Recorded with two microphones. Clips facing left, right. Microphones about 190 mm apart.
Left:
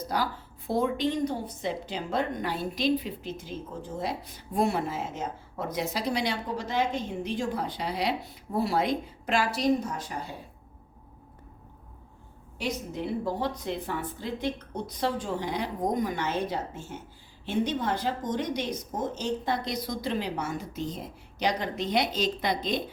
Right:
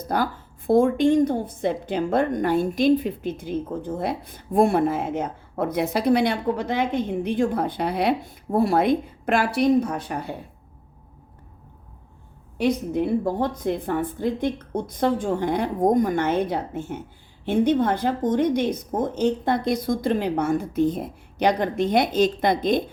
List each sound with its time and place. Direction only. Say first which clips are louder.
0.1 s a woman's voice: right 6 dB; 55° right (ahead or behind)
12.5 s speech: right 11 dB; 55° right (ahead or behind)